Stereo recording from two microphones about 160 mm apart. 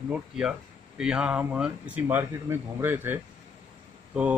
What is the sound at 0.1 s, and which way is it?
A man's voice, 5° right (ahead or behind).